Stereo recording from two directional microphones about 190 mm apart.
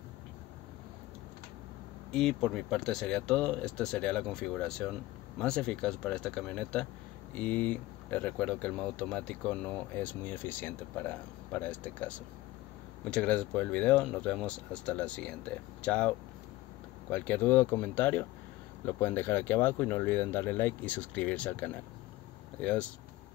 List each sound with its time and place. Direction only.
2.1 s speech: 5° left (ahead or behind)